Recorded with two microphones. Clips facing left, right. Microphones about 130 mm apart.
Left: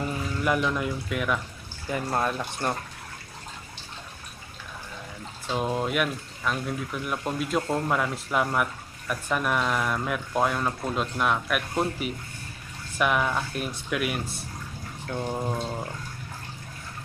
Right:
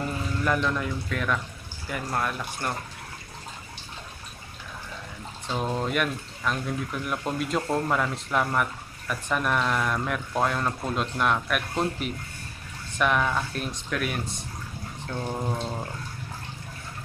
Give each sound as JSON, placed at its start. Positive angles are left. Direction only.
{"t": 0.4, "sound": "speech", "side_deg": 10}
{"t": 1.9, "sound": "speech", "side_deg": 25}
{"t": 5.5, "sound": "speech", "side_deg": 5}